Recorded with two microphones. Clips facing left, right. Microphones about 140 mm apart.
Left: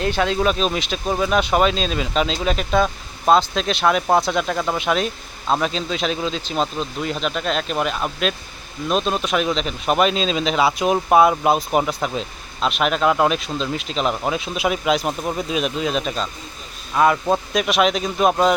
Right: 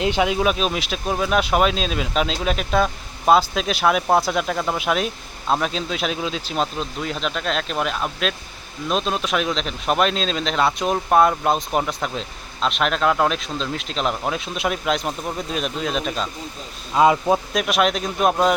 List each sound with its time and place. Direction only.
0.0 s speech: 15° right (ahead or behind)
16.9 s a man's voice: 20° right (ahead or behind)
17.3 s speech: centre (ahead or behind)